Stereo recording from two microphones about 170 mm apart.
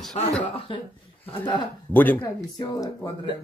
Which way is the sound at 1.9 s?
10° left (ahead or behind).